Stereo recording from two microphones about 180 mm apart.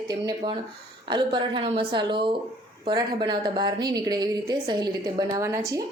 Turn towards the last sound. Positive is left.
turn(degrees=-15)  # may be behind; listen again after turning